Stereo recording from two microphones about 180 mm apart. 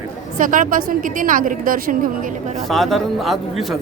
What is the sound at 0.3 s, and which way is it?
A woman's voice, 45° right (ahead or behind).